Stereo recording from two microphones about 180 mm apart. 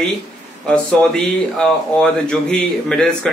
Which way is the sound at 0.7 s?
5° left (ahead or behind).